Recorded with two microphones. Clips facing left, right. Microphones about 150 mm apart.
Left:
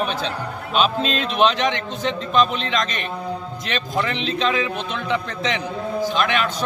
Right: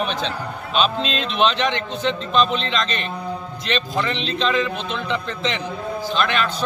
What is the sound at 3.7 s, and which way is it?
A man's voice, 10° left (ahead or behind).